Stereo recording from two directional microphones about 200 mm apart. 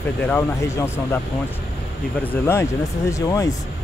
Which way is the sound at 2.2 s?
15° left (ahead or behind).